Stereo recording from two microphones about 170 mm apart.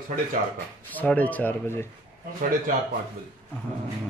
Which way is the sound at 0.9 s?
10° left (ahead or behind).